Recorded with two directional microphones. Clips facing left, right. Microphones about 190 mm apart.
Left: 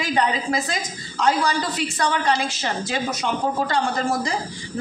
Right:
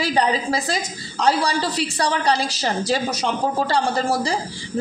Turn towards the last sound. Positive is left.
turn(degrees=-30)  # may be behind; listen again after turning